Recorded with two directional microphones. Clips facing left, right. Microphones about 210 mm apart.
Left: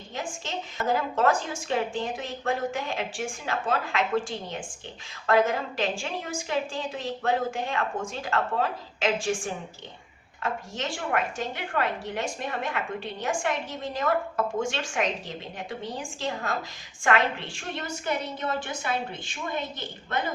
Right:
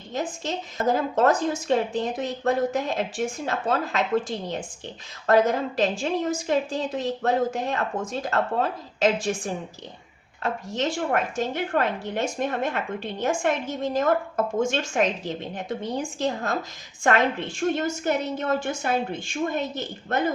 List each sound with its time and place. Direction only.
0.1 s a woman's voice: 40° right (ahead or behind)